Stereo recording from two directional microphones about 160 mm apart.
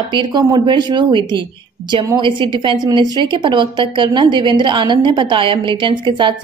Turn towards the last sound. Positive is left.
turn(degrees=-30)  # may be behind; listen again after turning